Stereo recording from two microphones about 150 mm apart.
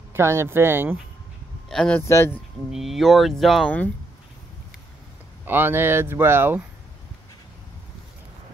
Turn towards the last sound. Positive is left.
turn(degrees=-15)  # may be behind; listen again after turning